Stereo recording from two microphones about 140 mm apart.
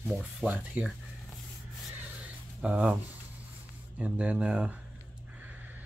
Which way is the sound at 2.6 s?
10° right (ahead or behind).